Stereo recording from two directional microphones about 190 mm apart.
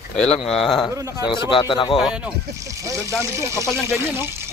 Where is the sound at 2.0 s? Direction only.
5° right (ahead or behind).